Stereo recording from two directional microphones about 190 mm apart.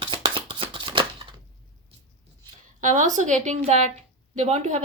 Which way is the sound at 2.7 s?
40° right (ahead or behind).